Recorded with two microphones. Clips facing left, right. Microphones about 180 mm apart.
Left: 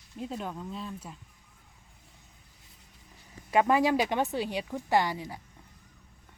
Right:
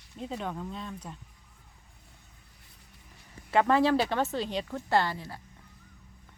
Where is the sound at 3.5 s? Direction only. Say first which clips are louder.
Even; 15° left (ahead or behind).